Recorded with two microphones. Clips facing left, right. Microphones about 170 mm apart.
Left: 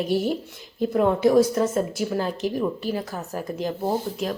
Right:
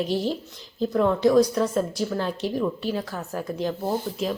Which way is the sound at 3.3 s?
Centre (ahead or behind).